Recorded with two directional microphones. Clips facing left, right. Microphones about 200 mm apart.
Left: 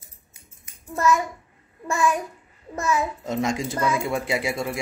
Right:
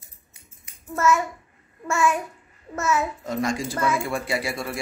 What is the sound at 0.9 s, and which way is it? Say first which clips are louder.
Speech: even; 15° left (ahead or behind).